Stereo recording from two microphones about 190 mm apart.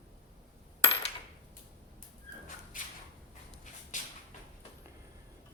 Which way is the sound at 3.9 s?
40° left (ahead or behind).